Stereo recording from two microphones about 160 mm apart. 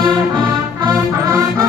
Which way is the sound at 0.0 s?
25° right (ahead or behind).